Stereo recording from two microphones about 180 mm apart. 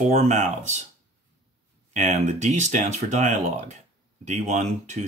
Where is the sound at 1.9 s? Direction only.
40° right (ahead or behind).